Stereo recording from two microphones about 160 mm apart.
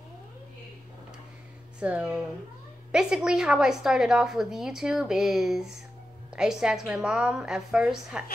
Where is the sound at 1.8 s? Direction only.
5° right (ahead or behind).